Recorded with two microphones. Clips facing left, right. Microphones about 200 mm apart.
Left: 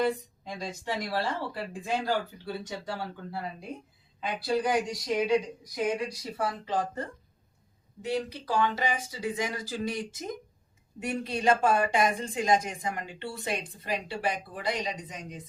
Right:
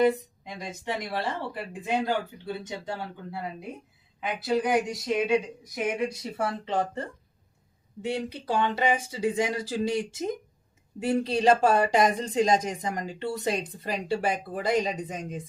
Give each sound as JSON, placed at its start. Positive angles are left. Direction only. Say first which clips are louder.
{"t": 0.0, "sound": "speech", "louder": "right 5 dB", "side_deg": -20}